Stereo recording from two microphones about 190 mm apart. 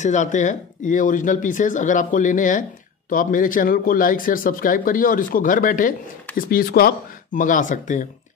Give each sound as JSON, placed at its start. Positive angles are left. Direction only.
{"t": 0.0, "sound": "speech", "side_deg": 40}